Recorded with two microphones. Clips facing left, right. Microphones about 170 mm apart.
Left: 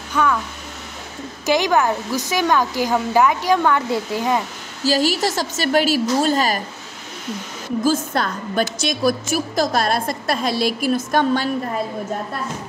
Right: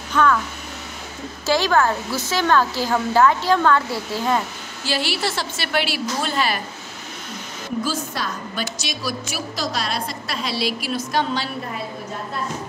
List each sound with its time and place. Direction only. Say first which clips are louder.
0.1 s speech: right 1 dB; 10° left (ahead or behind)
1.4 s a woman's voice: left 1 dB; 20° left (ahead or behind)
4.8 s a woman's voice: left 6 dB; 40° left (ahead or behind)
7.8 s a woman's voice: left 9 dB; 55° left (ahead or behind)